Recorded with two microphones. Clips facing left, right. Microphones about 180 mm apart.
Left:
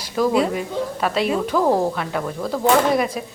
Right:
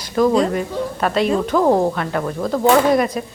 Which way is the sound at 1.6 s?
15° right (ahead or behind).